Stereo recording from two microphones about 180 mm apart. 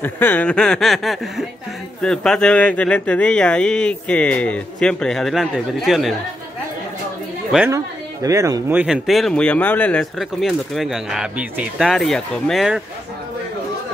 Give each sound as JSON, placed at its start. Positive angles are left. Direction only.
{"t": 0.0, "sound": "speech", "side_deg": 10}
{"t": 7.5, "sound": "speech", "side_deg": -15}
{"t": 8.7, "sound": "speech", "side_deg": -5}